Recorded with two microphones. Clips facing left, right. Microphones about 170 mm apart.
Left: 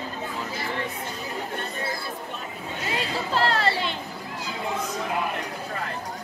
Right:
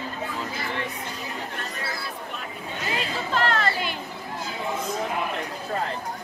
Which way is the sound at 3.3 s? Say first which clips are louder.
Left 1 dB; 30° left (ahead or behind).